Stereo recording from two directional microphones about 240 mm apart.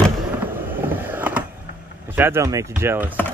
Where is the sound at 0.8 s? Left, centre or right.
Centre.